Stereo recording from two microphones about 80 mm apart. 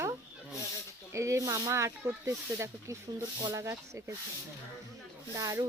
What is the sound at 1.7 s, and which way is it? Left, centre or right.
Speech, right.